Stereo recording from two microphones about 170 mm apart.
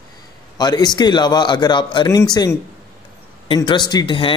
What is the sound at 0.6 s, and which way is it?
Speech, 25° left (ahead or behind).